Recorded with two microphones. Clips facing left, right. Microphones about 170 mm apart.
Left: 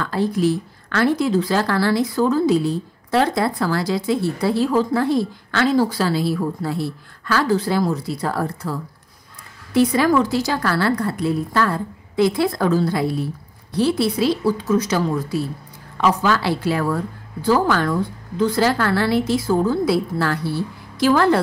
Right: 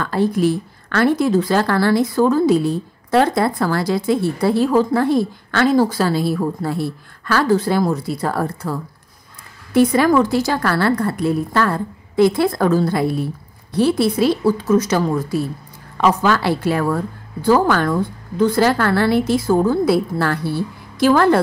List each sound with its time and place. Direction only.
0.0 s speech: 55° right (ahead or behind)
9.8 s speech: 50° right (ahead or behind)